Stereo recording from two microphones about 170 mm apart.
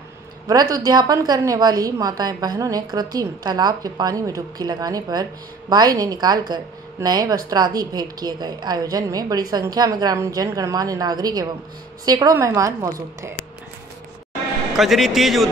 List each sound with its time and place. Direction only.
0.7 s a woman's voice: 25° right (ahead or behind)
14.8 s a man's voice: centre (ahead or behind)